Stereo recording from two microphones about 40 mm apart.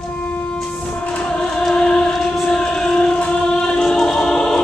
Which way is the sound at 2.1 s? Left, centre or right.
Centre.